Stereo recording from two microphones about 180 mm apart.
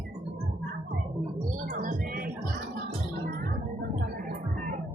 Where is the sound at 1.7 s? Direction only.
50° right (ahead or behind).